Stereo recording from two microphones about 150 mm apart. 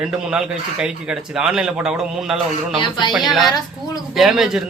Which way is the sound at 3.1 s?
Centre (ahead or behind).